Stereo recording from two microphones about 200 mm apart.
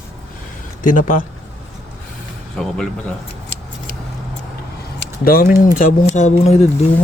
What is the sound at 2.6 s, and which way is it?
Speech, centre (ahead or behind).